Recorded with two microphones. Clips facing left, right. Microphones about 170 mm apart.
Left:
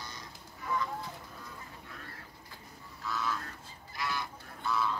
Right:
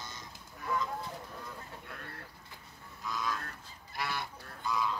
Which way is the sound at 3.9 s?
60° right (ahead or behind).